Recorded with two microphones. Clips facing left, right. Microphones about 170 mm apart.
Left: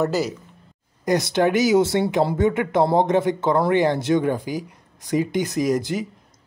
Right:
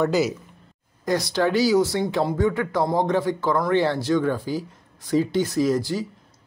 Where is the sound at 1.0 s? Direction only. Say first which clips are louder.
Left 3 dB; 20° left (ahead or behind).